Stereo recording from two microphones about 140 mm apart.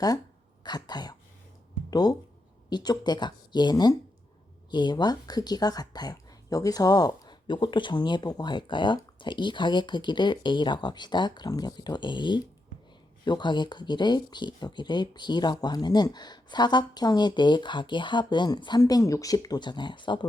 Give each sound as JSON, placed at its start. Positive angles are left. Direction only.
{"t": 0.6, "sound": "throat clearing", "side_deg": 30}
{"t": 1.9, "sound": "speech", "side_deg": 30}